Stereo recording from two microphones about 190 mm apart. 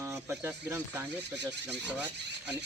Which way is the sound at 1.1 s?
65° right (ahead or behind).